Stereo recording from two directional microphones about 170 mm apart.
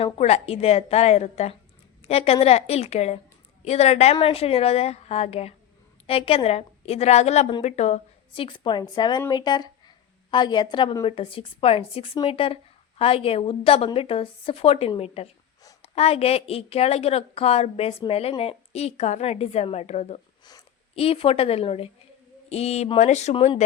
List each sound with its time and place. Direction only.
0.0 s a woman's voice: 40° left (ahead or behind)
20.4 s a sound: 20° left (ahead or behind)
20.9 s a woman's voice: 35° left (ahead or behind)